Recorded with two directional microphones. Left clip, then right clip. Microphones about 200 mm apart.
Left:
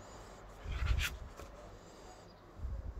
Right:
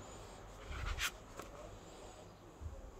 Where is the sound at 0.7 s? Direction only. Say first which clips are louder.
Left 1 dB; 5° right (ahead or behind).